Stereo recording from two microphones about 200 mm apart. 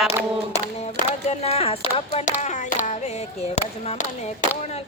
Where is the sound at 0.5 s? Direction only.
35° left (ahead or behind).